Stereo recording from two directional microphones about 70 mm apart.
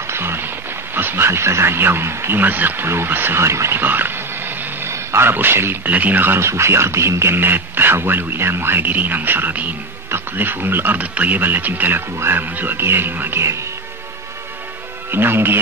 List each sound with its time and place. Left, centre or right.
0.0 s a sound: right
0.9 s speech: right
5.9 s speech: right
15.0 s speech: right